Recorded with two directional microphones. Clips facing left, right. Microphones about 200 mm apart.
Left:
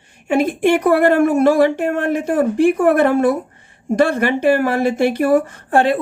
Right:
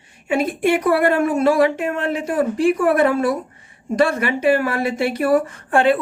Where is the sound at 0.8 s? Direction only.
50° left (ahead or behind).